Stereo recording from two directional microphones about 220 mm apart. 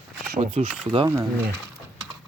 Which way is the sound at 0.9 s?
20° right (ahead or behind).